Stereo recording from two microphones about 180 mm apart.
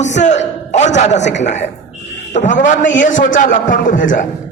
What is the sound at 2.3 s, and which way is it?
A man's voice, 45° left (ahead or behind).